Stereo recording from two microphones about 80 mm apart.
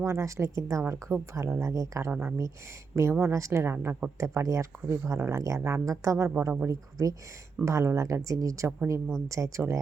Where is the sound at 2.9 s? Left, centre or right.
Right.